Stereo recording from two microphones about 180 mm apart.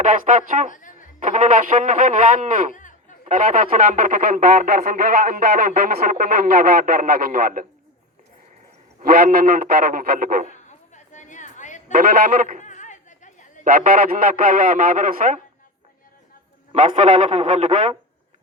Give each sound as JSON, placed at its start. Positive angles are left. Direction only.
{"t": 0.1, "sound": "speech", "side_deg": -50}
{"t": 0.7, "sound": "music", "side_deg": 45}
{"t": 1.2, "sound": "speech", "side_deg": -45}
{"t": 9.0, "sound": "a man's voice", "side_deg": -55}
{"t": 10.5, "sound": "chop", "side_deg": 40}
{"t": 11.9, "sound": "a sound", "side_deg": -55}
{"t": 12.6, "sound": "a sound", "side_deg": 45}
{"t": 13.7, "sound": "speech", "side_deg": -50}
{"t": 16.7, "sound": "speech", "side_deg": -40}